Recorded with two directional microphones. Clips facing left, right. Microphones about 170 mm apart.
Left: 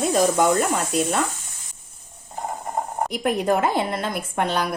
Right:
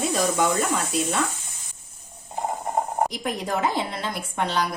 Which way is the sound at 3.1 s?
55° left (ahead or behind).